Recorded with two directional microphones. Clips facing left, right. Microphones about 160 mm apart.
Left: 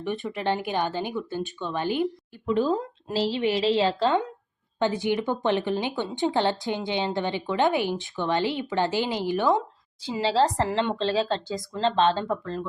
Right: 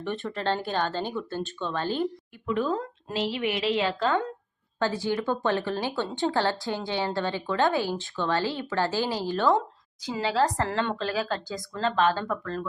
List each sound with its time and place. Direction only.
0.0 s speech: 15° left (ahead or behind)
2.5 s a woman's voice: 25° left (ahead or behind)
10.1 s a woman's voice: 30° left (ahead or behind)